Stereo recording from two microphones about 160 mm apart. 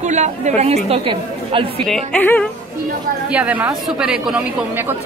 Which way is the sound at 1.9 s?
5° left (ahead or behind).